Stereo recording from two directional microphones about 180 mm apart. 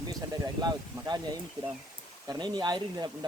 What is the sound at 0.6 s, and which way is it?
Speech, 20° right (ahead or behind).